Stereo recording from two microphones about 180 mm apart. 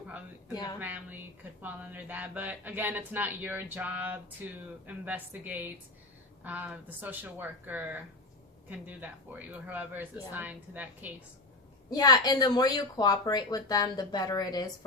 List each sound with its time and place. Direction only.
0.5 s speech: 20° left (ahead or behind)
0.8 s speech: 10° right (ahead or behind)
11.9 s speech: 20° left (ahead or behind)